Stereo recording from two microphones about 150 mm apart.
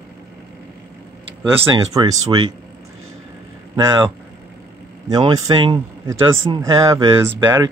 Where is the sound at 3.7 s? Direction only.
30° right (ahead or behind).